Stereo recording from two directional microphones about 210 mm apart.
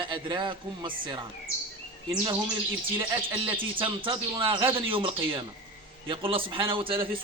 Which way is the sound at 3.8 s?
25° right (ahead or behind).